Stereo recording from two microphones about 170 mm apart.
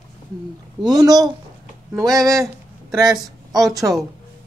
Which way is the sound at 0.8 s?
20° right (ahead or behind).